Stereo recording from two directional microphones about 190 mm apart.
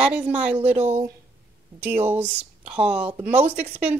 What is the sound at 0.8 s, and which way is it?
Speech, 35° right (ahead or behind).